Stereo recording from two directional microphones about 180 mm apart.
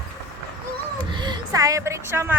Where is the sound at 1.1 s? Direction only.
25° right (ahead or behind).